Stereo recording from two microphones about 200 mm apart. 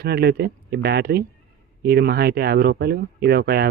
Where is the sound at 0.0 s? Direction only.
55° right (ahead or behind).